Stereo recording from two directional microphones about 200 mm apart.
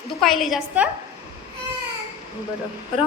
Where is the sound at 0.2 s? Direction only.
Centre (ahead or behind).